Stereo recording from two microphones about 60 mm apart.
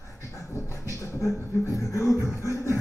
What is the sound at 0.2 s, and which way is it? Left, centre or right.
Beatboxing, left.